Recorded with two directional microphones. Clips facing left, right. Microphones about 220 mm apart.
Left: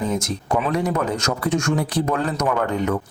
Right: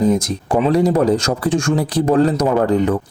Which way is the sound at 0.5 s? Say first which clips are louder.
Right 7 dB; 35° right (ahead or behind).